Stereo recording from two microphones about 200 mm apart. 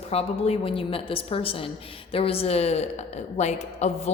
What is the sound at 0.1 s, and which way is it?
A woman's voice, 30° left (ahead or behind).